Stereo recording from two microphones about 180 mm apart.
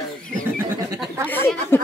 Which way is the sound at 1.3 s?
10° left (ahead or behind).